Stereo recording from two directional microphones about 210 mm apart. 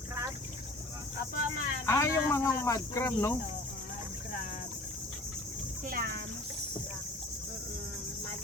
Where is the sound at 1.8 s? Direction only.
15° left (ahead or behind).